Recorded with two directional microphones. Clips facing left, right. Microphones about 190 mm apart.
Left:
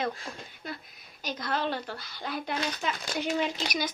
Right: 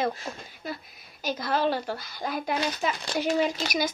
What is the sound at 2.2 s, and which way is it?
Speech, 40° right (ahead or behind).